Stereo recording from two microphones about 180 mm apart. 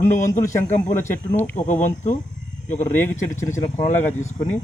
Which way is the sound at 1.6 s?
40° left (ahead or behind).